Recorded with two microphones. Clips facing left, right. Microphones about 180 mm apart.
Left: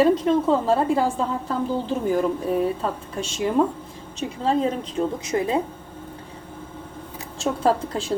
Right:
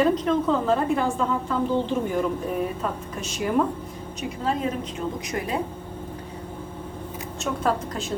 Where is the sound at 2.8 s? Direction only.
30° left (ahead or behind).